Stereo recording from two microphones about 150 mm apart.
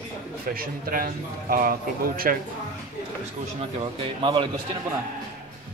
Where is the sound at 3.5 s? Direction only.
40° right (ahead or behind).